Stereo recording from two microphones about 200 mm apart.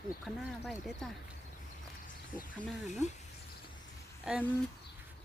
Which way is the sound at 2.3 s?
40° left (ahead or behind).